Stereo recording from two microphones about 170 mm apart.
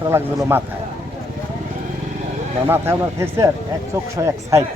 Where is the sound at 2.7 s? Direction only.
15° right (ahead or behind).